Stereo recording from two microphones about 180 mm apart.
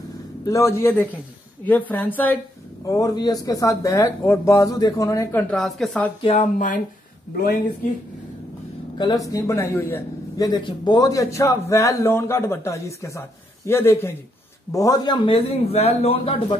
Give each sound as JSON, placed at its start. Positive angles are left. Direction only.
{"t": 0.5, "sound": "a man's voice", "side_deg": 15}
{"t": 6.2, "sound": "a man's voice", "side_deg": 40}
{"t": 8.9, "sound": "a man's voice", "side_deg": 20}